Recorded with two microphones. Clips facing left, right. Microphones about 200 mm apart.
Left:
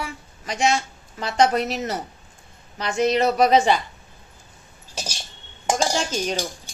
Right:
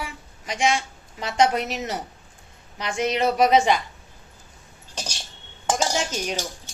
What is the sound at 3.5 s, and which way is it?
Speech, 35° left (ahead or behind).